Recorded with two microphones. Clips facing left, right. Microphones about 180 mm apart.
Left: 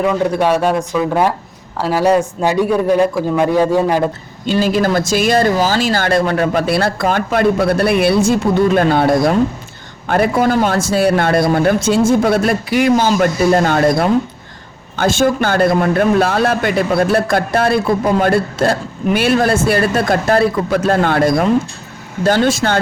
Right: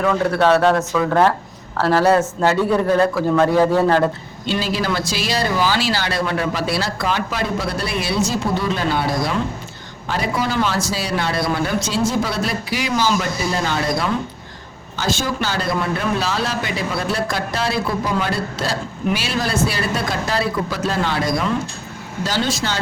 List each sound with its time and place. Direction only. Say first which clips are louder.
0.0 s a man's voice: left 2 dB; 15° left (ahead or behind)
4.4 s a man's voice: left 7 dB; 45° left (ahead or behind)